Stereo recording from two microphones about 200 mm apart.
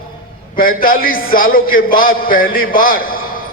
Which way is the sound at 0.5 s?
45° left (ahead or behind).